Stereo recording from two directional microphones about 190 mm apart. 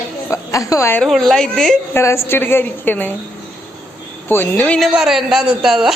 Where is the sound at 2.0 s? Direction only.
15° left (ahead or behind).